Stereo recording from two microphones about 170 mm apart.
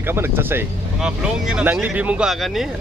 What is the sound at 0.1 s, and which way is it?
Speech, 15° right (ahead or behind).